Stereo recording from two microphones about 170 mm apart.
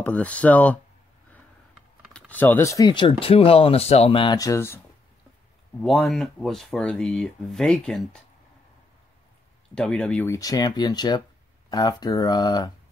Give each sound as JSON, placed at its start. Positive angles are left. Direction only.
{"t": 0.0, "sound": "speech", "side_deg": 10}
{"t": 2.1, "sound": "speech", "side_deg": 10}
{"t": 5.8, "sound": "speech", "side_deg": 0}
{"t": 9.8, "sound": "speech", "side_deg": 5}